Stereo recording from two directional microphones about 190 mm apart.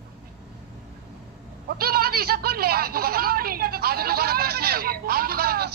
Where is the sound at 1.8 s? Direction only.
55° right (ahead or behind).